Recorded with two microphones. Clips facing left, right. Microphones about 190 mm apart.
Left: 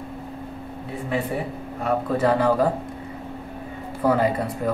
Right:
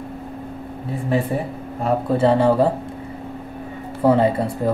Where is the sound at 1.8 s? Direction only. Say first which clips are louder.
Right 4 dB; 30° right (ahead or behind).